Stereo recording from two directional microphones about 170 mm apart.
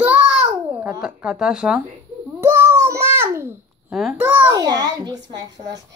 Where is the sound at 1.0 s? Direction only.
5° right (ahead or behind).